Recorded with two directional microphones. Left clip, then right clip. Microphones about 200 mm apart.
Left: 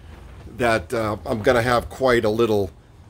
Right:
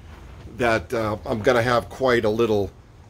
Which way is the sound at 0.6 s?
10° left (ahead or behind).